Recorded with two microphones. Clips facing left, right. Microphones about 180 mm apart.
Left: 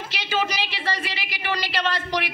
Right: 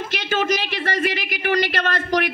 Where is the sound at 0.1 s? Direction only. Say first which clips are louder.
Right 4 dB; 50° right (ahead or behind).